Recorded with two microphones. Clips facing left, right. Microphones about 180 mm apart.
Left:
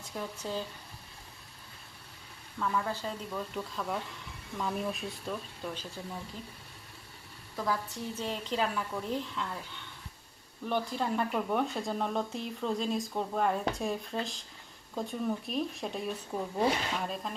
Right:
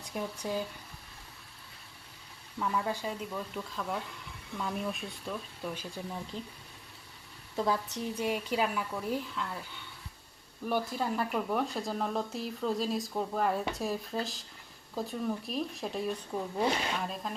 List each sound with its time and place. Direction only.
0.2 s a woman's voice: 15° right (ahead or behind)
2.6 s a woman's voice: 15° right (ahead or behind)
6.0 s a woman's voice: 20° right (ahead or behind)
7.5 s a woman's voice: 25° right (ahead or behind); by 17.3 s centre (ahead or behind)